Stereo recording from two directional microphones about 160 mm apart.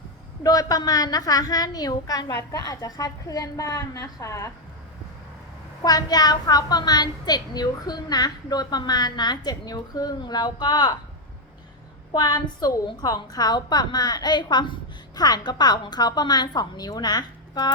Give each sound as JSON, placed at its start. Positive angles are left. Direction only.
{"t": 0.4, "sound": "a woman's voice", "side_deg": 25}
{"t": 5.8, "sound": "a woman's voice", "side_deg": 25}
{"t": 12.1, "sound": "a woman's voice", "side_deg": 25}